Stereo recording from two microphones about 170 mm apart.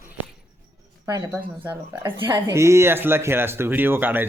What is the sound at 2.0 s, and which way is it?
Speech, 15° right (ahead or behind).